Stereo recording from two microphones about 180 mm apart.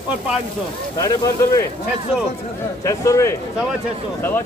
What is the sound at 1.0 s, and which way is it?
Speech, 20° left (ahead or behind).